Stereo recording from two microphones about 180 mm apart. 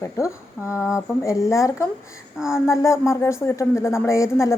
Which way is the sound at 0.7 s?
5° right (ahead or behind).